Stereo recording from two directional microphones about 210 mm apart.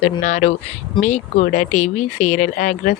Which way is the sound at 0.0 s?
35° left (ahead or behind).